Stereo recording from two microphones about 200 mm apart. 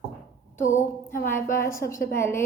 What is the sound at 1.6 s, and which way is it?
Speech, 15° left (ahead or behind).